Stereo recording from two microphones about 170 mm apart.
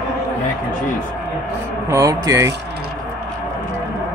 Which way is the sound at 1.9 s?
20° right (ahead or behind).